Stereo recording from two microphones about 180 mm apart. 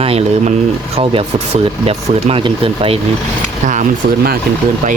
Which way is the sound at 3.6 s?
45° right (ahead or behind).